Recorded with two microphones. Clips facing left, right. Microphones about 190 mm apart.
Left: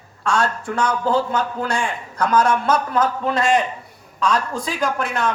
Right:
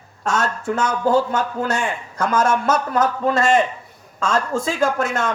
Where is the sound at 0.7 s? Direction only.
45° right (ahead or behind).